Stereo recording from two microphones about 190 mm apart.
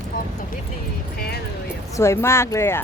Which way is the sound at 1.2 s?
55° left (ahead or behind).